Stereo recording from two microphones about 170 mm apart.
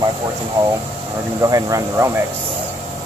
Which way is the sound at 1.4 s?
20° right (ahead or behind).